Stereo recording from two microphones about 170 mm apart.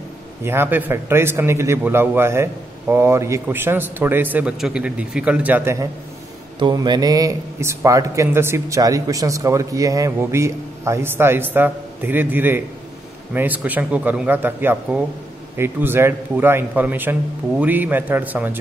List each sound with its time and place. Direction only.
0.4 s a man's voice: 15° right (ahead or behind)
6.6 s a man's voice: 25° right (ahead or behind); by 18.6 s 10° right (ahead or behind)